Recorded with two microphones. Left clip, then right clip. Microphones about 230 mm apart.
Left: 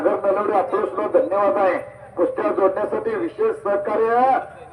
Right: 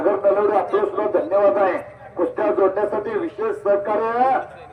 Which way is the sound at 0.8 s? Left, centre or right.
Left.